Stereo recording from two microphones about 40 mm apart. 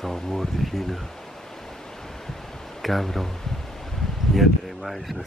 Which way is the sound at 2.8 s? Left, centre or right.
Centre.